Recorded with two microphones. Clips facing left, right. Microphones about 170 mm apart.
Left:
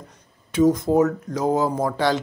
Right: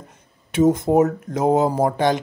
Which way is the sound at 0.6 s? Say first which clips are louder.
Right 1 dB; 25° right (ahead or behind).